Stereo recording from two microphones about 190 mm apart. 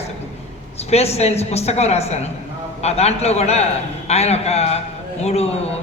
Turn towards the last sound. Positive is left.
turn(degrees=35)  # may be behind; listen again after turning